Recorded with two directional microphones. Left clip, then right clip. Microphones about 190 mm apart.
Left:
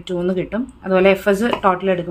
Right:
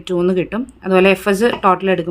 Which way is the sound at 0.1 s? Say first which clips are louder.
Right 4 dB; 25° right (ahead or behind).